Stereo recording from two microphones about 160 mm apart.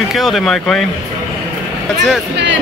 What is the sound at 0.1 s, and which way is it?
Speech, centre (ahead or behind).